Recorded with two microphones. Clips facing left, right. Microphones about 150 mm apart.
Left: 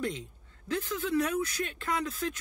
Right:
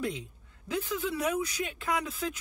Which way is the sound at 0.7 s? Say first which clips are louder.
Even; 10° right (ahead or behind).